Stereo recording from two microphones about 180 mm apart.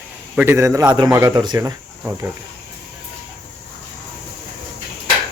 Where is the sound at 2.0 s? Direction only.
10° right (ahead or behind).